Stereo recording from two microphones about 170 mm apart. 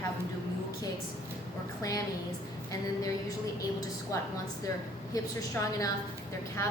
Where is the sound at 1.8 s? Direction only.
20° left (ahead or behind).